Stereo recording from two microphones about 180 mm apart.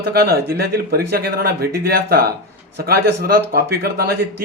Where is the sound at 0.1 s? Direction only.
60° right (ahead or behind).